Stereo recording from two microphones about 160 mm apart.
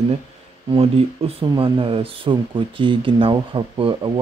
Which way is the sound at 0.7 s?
40° right (ahead or behind).